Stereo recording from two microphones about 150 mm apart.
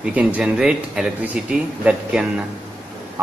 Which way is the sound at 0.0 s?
10° right (ahead or behind).